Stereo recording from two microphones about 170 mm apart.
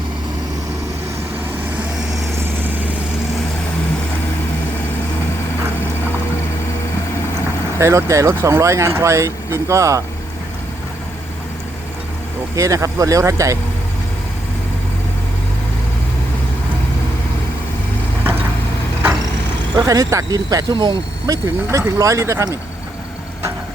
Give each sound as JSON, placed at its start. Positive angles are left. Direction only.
{"t": 2.6, "sound": "vehicle", "side_deg": -10}
{"t": 7.8, "sound": "speech", "side_deg": -15}
{"t": 12.5, "sound": "speech", "side_deg": -20}
{"t": 19.7, "sound": "speech", "side_deg": -20}